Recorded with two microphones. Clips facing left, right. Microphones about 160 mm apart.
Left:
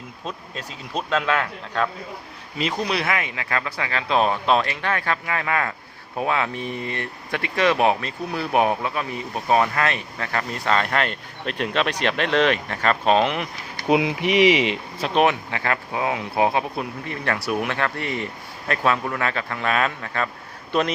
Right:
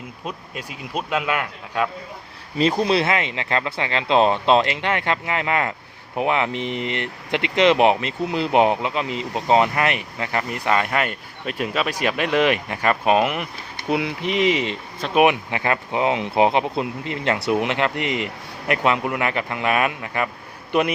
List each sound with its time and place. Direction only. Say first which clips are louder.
0.3 s speech: right 1 dB; 10° right (ahead or behind)
2.6 s speech: right 6 dB; 30° right (ahead or behind); by 13.5 s 5° right (ahead or behind)
13.8 s speech: left 3 dB; 20° left (ahead or behind)
15.1 s speech: right 3 dB; 15° right (ahead or behind)